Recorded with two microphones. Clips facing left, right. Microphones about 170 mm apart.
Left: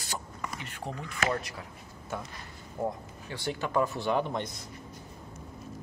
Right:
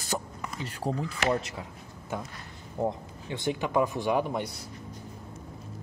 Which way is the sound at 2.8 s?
20° right (ahead or behind).